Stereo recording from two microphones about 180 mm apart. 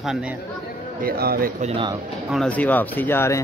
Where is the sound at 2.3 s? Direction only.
5° left (ahead or behind).